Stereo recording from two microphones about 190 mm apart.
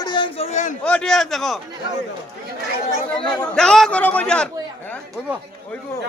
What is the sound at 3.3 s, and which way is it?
A man's voice, 5° left (ahead or behind).